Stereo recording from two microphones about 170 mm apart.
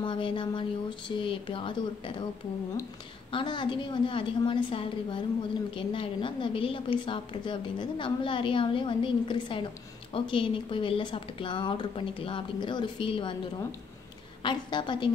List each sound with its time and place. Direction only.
0.0 s a woman's voice: 30° left (ahead or behind)
3.3 s a woman's voice: 30° left (ahead or behind)